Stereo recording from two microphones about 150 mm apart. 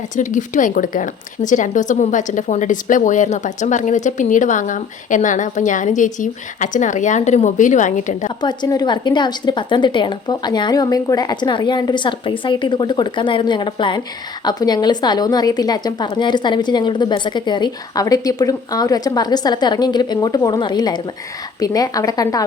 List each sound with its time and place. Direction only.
0.2 s speech: 60° left (ahead or behind)
8.4 s a woman's voice: 25° left (ahead or behind)